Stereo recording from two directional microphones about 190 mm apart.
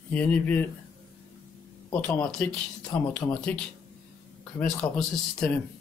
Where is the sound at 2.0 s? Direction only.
5° left (ahead or behind).